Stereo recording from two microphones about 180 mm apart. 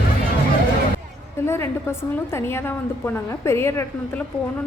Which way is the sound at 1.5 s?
15° left (ahead or behind).